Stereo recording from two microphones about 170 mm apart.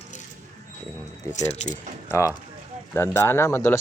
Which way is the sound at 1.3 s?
45° left (ahead or behind).